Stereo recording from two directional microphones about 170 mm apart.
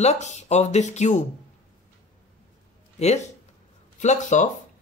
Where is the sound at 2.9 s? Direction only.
40° left (ahead or behind).